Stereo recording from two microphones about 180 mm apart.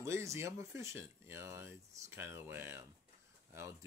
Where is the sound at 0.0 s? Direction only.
15° right (ahead or behind).